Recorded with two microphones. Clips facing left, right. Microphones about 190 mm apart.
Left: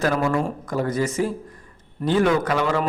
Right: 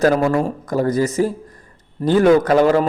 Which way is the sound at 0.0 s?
40° right (ahead or behind).